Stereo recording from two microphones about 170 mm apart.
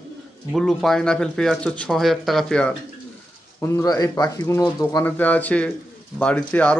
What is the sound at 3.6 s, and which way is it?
Speech, 20° left (ahead or behind).